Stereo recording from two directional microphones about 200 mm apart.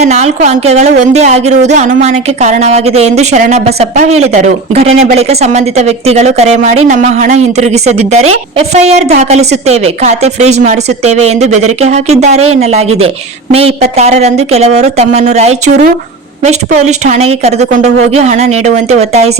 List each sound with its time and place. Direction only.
0.0 s a woman's voice: 35° right (ahead or behind)